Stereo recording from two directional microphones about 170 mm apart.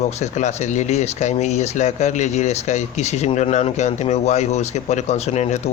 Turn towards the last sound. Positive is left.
turn(degrees=40)  # may be behind; listen again after turning